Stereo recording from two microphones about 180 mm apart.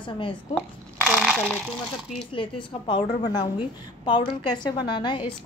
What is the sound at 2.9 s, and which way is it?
Speech, 25° left (ahead or behind).